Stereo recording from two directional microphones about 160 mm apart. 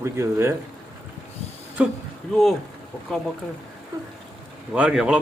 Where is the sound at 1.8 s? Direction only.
5° right (ahead or behind).